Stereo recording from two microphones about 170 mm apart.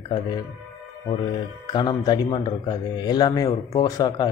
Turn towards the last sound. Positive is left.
turn(degrees=20)  # may be behind; listen again after turning